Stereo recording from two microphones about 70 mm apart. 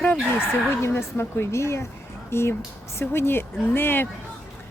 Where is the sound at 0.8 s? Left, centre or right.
Left.